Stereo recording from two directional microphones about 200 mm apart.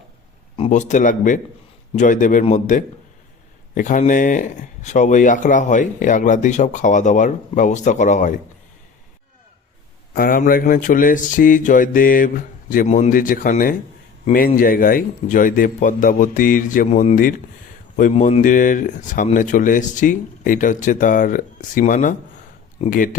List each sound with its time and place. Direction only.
0.5 s speech: 30° left (ahead or behind)
10.2 s mantra: 45° left (ahead or behind)
18.1 s speech: 35° left (ahead or behind)
22.8 s mantra: 40° left (ahead or behind)